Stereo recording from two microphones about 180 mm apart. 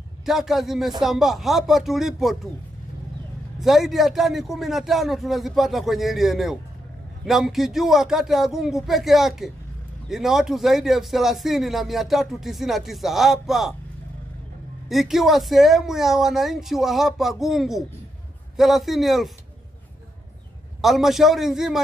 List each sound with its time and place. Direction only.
0.2 s a man's voice: centre (ahead or behind)
3.5 s a man's voice: centre (ahead or behind)
14.9 s a man's voice: centre (ahead or behind)
20.8 s a man's voice: centre (ahead or behind)